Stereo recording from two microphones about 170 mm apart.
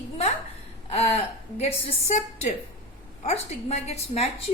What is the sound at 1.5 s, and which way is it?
A woman's voice, 40° left (ahead or behind).